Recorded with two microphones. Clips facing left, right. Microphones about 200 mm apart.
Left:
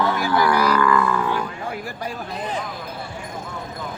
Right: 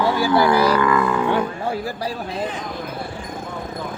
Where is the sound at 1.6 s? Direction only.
35° right (ahead or behind).